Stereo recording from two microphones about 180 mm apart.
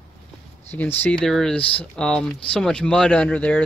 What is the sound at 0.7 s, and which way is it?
Speech, 10° left (ahead or behind).